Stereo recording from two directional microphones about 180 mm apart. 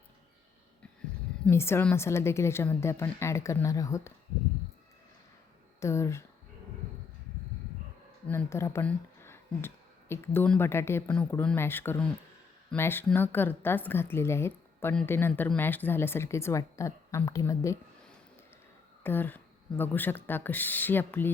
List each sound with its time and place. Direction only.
1.5 s a woman's voice: 15° left (ahead or behind)
5.8 s a woman's voice: 15° left (ahead or behind)
8.3 s a woman's voice: 15° left (ahead or behind)
19.0 s a woman's voice: 10° left (ahead or behind)